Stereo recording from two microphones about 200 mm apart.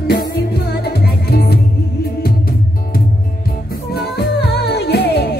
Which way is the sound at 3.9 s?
55° left (ahead or behind).